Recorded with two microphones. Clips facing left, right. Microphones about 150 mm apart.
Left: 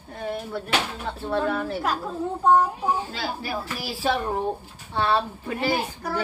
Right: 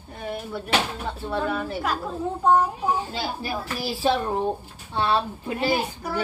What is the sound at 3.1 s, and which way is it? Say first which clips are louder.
A child's voice: right 1 dB; 25° right (ahead or behind).